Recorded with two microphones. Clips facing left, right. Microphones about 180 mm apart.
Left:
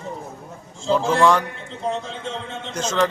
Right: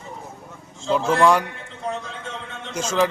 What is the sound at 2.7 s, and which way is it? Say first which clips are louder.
Speech: even; 10° right (ahead or behind).